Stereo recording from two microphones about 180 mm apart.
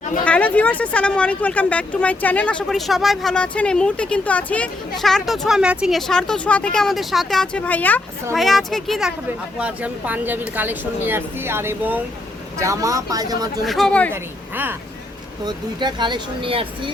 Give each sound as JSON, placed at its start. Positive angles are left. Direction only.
{"t": 0.3, "sound": "speech", "side_deg": 10}
{"t": 13.7, "sound": "speech", "side_deg": 0}
{"t": 14.1, "sound": "speech", "side_deg": -10}
{"t": 15.4, "sound": "speech", "side_deg": -25}